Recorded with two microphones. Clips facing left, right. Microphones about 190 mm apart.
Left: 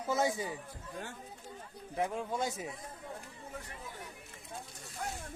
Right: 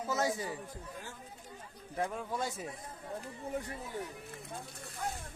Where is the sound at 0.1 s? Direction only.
20° left (ahead or behind).